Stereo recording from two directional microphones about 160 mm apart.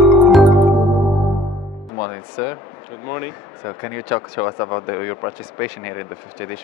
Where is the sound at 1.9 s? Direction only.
20° left (ahead or behind).